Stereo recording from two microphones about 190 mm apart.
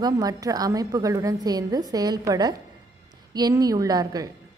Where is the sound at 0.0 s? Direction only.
20° right (ahead or behind).